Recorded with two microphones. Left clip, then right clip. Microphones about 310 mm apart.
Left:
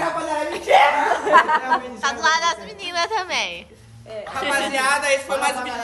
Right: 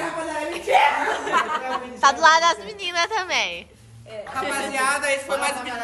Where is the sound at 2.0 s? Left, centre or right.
Centre.